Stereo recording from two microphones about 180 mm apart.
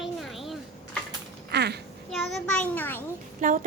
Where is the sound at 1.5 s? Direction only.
65° right (ahead or behind).